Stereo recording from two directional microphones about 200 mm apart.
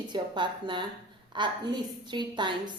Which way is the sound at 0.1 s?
25° right (ahead or behind).